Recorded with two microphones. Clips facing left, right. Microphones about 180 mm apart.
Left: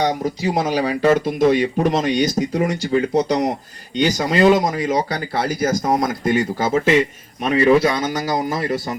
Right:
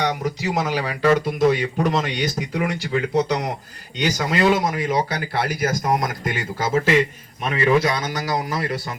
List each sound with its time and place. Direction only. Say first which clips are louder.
0.0 s speech: left 4 dB; 30° left (ahead or behind)
5.5 s speech: left 4 dB; 30° left (ahead or behind)